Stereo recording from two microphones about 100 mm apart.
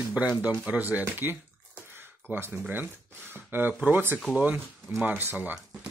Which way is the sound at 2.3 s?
20° right (ahead or behind).